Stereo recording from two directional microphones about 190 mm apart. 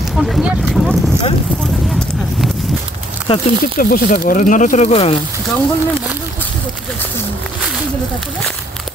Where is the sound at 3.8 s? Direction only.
50° left (ahead or behind); by 5.2 s 35° left (ahead or behind).